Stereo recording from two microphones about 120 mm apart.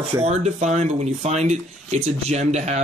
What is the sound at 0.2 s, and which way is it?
Speech, 65° right (ahead or behind).